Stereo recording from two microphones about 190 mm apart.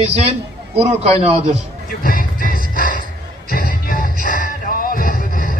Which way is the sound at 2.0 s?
45° left (ahead or behind).